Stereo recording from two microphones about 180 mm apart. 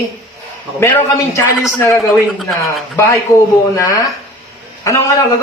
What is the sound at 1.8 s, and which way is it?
Speech, 15° left (ahead or behind).